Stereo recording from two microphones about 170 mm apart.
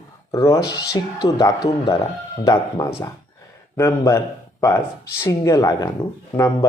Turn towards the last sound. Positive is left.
turn(degrees=20)  # may be behind; listen again after turning